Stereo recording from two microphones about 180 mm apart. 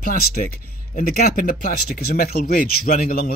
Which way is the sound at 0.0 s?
50° left (ahead or behind).